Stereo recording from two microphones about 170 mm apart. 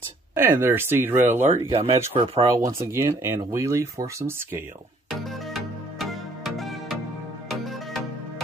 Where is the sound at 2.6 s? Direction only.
15° right (ahead or behind).